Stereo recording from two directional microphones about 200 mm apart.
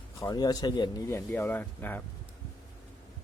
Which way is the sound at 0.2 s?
20° left (ahead or behind).